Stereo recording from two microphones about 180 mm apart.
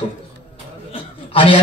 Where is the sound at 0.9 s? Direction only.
30° left (ahead or behind).